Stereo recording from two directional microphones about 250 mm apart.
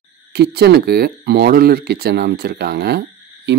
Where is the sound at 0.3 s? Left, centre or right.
Right.